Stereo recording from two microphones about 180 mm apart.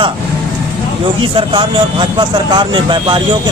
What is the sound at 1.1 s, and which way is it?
A man's voice, 30° right (ahead or behind).